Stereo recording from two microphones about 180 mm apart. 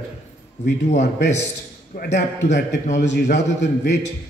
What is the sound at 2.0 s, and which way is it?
A man's voice, 65° left (ahead or behind).